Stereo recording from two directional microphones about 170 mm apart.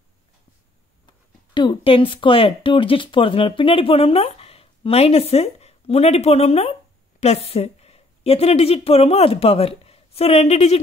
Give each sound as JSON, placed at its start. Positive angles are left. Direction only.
{"t": 1.0, "sound": "speech", "side_deg": 25}